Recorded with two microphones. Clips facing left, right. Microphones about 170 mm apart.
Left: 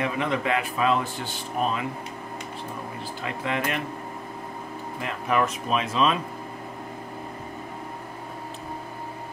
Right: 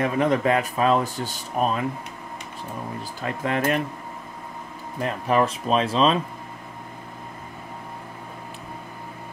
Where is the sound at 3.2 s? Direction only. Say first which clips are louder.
Right 5 dB; 40° right (ahead or behind).